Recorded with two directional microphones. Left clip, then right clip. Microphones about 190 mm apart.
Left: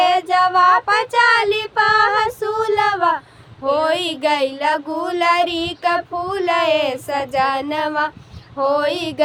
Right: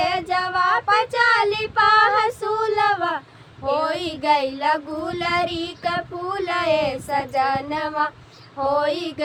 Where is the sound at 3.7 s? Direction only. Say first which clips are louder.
Left 5 dB; 45° left (ahead or behind).